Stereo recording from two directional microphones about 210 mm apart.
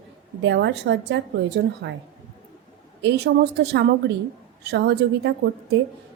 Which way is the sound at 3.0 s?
50° right (ahead or behind).